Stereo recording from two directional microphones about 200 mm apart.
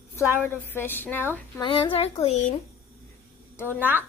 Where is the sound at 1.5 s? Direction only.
25° left (ahead or behind).